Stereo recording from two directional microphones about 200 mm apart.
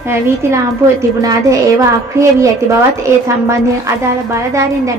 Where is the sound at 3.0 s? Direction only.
15° right (ahead or behind).